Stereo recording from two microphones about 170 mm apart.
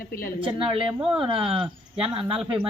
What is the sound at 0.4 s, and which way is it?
Speech, 30° right (ahead or behind).